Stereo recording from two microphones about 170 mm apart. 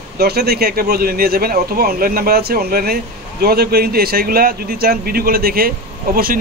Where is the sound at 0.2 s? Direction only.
65° right (ahead or behind).